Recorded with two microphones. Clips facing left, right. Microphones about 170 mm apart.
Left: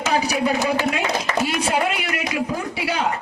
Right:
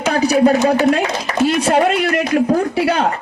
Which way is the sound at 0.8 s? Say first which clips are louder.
Right 7 dB; 50° right (ahead or behind).